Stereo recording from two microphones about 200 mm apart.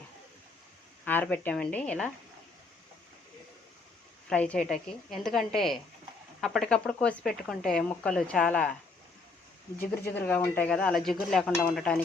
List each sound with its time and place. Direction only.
1.0 s speech: 10° left (ahead or behind)
4.3 s speech: 5° left (ahead or behind)
9.8 s speech: 50° left (ahead or behind)
10.1 s speech: 10° left (ahead or behind)